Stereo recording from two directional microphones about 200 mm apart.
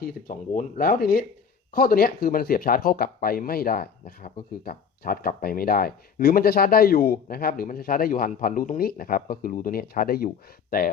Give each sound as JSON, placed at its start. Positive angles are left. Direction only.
{"t": 0.0, "sound": "speech", "side_deg": 45}